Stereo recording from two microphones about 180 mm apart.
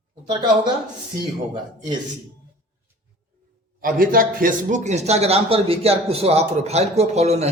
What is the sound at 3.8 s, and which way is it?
Speech, 50° right (ahead or behind).